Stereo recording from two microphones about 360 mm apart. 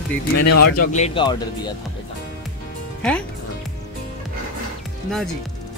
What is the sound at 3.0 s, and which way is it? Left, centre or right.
Speech, centre.